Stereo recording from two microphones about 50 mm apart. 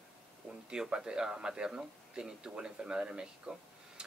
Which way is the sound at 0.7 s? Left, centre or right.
Centre.